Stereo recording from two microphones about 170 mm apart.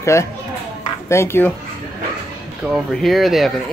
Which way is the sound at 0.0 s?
15° left (ahead or behind).